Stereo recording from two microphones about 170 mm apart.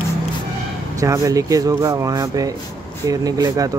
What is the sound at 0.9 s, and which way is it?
Speech, 20° right (ahead or behind).